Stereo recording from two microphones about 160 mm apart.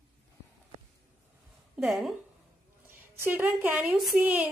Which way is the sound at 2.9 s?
15° right (ahead or behind).